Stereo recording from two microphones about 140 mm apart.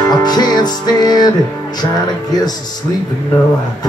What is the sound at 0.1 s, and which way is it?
Music, 30° left (ahead or behind).